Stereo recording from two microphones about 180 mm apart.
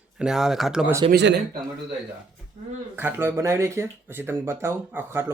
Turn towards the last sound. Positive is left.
turn(degrees=-10)  # may be behind; listen again after turning